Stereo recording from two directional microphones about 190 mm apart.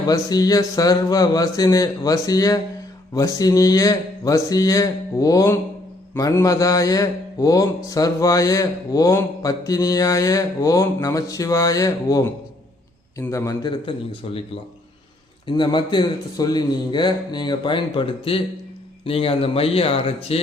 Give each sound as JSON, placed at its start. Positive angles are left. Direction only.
{"t": 0.1, "sound": "a man's voice", "side_deg": 20}
{"t": 15.4, "sound": "a man's voice", "side_deg": 25}